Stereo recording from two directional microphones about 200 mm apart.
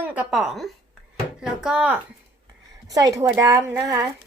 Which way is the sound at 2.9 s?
15° right (ahead or behind).